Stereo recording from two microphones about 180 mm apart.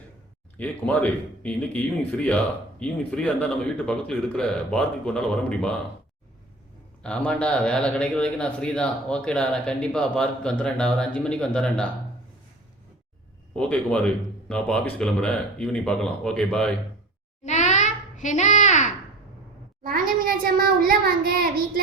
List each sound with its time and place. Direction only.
0.5 s speech: 10° left (ahead or behind)
7.3 s speech: 5° left (ahead or behind)
13.6 s speech: 5° left (ahead or behind)
17.4 s a sound: 40° left (ahead or behind)
19.8 s a child's voice: 50° right (ahead or behind)